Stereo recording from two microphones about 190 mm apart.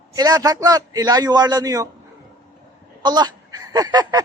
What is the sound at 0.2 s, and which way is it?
Speech, 20° right (ahead or behind).